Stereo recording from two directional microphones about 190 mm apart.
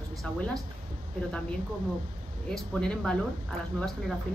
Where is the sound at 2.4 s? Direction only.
5° left (ahead or behind).